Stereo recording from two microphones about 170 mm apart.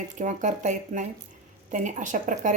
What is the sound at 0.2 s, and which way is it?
Speech, 50° right (ahead or behind).